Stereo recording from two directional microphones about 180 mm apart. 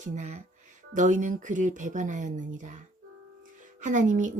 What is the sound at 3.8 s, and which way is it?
Speech, 45° right (ahead or behind).